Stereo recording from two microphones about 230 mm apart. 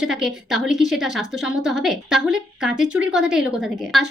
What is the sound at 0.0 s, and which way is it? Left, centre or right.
Speech, centre.